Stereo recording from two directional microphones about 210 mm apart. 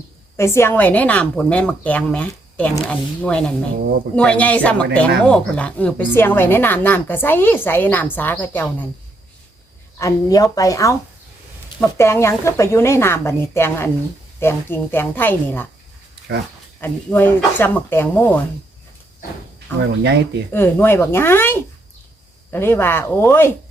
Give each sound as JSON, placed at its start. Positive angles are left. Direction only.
{"t": 0.3, "sound": "speech", "side_deg": 10}
{"t": 10.0, "sound": "speech", "side_deg": 15}
{"t": 16.8, "sound": "speech", "side_deg": 10}
{"t": 20.0, "sound": "speech", "side_deg": -55}
{"t": 20.5, "sound": "speech", "side_deg": 10}